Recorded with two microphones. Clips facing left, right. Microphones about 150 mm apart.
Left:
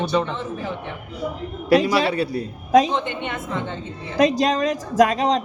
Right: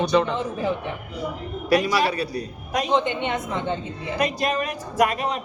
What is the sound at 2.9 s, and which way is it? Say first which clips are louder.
Speech: right 3 dB; 15° right (ahead or behind).